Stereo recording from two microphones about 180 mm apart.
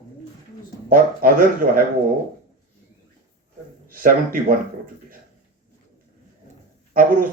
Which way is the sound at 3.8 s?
50° right (ahead or behind).